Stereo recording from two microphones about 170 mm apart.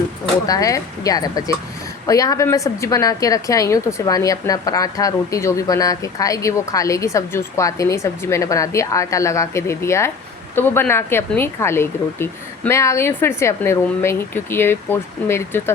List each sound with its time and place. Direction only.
0.4 s a woman's voice: 20° left (ahead or behind)